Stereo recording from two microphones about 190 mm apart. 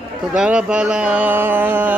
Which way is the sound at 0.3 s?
5° right (ahead or behind).